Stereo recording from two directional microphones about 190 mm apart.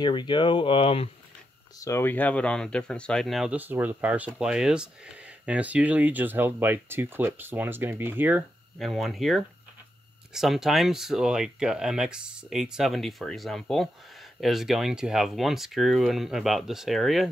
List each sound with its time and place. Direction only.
0.0 s speech: 25° left (ahead or behind)
1.8 s speech: 15° left (ahead or behind); by 8.5 s 10° right (ahead or behind)
8.7 s speech: centre (ahead or behind)